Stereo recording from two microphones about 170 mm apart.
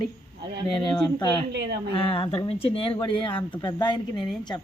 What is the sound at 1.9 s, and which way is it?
A woman's voice, 30° left (ahead or behind).